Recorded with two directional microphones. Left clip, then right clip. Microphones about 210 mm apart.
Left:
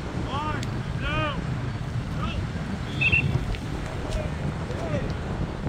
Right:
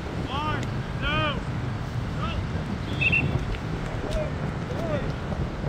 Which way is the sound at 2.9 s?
5° right (ahead or behind).